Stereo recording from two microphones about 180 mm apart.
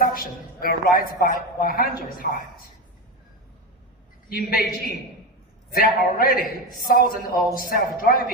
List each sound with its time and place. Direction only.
0.0 s a man's voice: 55° left (ahead or behind)
4.3 s a man's voice: 55° left (ahead or behind)
5.7 s a man's voice: 50° left (ahead or behind)